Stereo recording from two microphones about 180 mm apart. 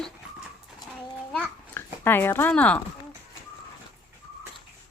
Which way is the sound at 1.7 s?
10° left (ahead or behind).